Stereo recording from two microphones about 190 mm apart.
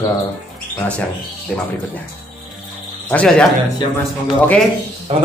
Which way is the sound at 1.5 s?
5° left (ahead or behind).